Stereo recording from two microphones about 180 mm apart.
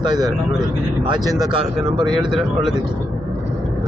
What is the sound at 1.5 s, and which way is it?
Speech, 25° right (ahead or behind).